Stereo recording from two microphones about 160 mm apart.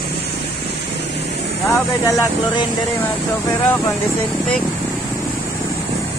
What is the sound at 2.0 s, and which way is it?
Speech, 20° left (ahead or behind).